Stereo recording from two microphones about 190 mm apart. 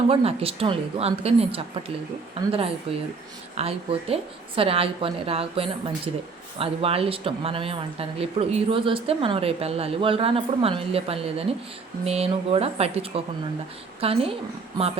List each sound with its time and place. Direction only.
0.1 s a woman's voice: 30° right (ahead or behind)